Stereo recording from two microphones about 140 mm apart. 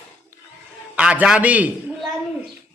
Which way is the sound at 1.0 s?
5° right (ahead or behind).